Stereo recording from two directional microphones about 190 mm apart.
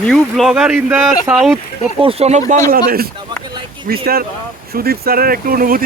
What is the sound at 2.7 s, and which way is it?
Speech, 50° right (ahead or behind).